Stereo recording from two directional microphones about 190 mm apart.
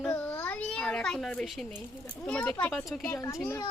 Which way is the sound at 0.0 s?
5° left (ahead or behind).